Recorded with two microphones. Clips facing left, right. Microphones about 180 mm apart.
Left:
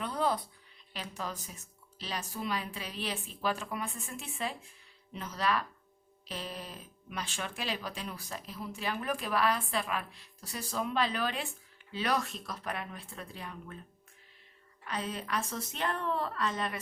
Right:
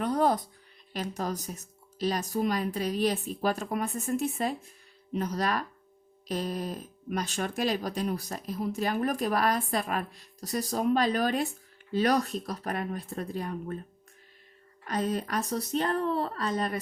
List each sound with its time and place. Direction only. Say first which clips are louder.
0.0 s music: right 6 dB; 45° right (ahead or behind)
0.9 s speech: right 8 dB; 40° right (ahead or behind)
14.8 s speech: right 7 dB; 40° right (ahead or behind)